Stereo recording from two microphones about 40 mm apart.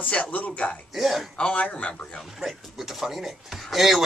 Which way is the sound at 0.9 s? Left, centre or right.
Centre.